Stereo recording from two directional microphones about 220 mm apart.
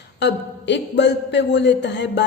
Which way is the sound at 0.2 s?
50° left (ahead or behind).